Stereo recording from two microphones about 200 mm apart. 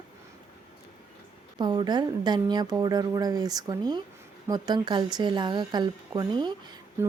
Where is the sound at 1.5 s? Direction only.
20° right (ahead or behind).